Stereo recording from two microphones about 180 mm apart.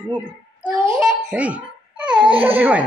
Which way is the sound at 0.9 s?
5° right (ahead or behind).